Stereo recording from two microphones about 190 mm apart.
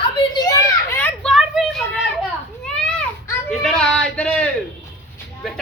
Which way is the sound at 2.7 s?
5° left (ahead or behind).